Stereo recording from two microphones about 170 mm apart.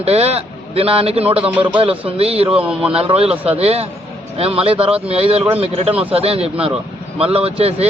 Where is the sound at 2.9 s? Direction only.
35° right (ahead or behind).